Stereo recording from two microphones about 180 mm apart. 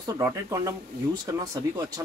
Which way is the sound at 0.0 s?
15° right (ahead or behind).